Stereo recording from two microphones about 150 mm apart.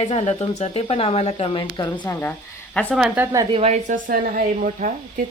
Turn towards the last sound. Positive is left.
turn(degrees=-60)  # may be behind; listen again after turning